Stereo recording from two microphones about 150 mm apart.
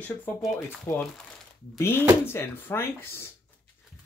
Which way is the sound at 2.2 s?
15° left (ahead or behind).